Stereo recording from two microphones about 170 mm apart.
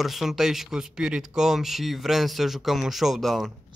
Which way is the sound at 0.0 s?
Centre (ahead or behind).